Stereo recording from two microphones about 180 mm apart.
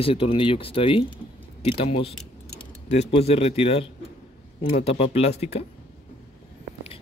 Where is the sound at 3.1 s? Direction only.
35° left (ahead or behind).